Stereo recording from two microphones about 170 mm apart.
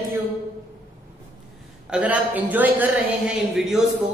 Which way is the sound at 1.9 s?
10° right (ahead or behind).